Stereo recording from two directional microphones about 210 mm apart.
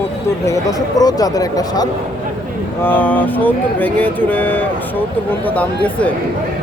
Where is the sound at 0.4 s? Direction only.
15° left (ahead or behind).